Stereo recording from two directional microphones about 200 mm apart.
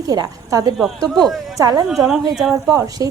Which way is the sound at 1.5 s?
20° right (ahead or behind).